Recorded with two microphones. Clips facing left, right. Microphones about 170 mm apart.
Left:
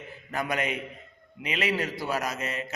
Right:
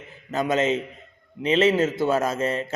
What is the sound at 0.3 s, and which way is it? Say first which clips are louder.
A man's voice: right 8 dB; 20° right (ahead or behind).